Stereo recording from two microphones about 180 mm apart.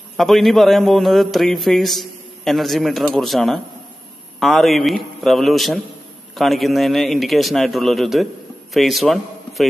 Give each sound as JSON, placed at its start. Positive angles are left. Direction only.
{"t": 0.2, "sound": "a man's voice", "side_deg": 0}